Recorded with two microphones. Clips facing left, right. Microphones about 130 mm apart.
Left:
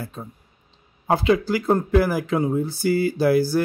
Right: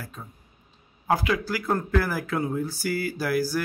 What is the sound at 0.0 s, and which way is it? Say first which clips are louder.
Speech: left 6 dB; 30° left (ahead or behind).